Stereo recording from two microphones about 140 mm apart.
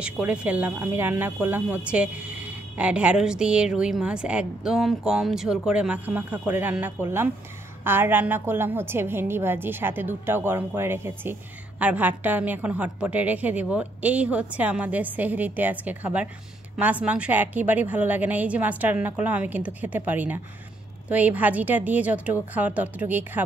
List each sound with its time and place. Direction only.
0.0 s speech: 10° right (ahead or behind)